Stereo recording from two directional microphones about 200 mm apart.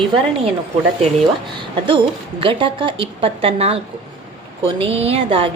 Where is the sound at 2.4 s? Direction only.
25° right (ahead or behind).